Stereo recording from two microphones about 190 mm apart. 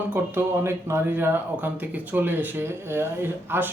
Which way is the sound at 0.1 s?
10° right (ahead or behind).